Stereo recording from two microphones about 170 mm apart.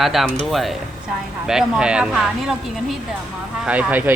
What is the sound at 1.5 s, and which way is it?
Speech, 5° right (ahead or behind).